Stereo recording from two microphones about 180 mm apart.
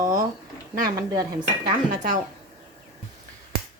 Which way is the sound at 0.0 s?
20° right (ahead or behind).